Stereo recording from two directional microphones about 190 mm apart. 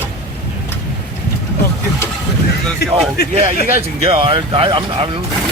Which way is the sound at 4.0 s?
30° right (ahead or behind).